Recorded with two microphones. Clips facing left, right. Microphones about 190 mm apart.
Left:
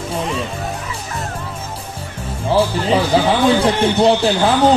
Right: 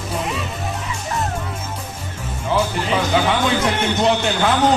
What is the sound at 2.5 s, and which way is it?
A man's voice, 30° left (ahead or behind).